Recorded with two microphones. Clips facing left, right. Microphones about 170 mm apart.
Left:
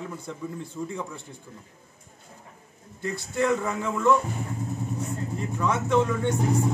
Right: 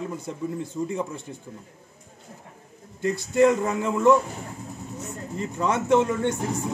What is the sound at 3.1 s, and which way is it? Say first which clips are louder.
A man's voice: right 6 dB; 20° right (ahead or behind).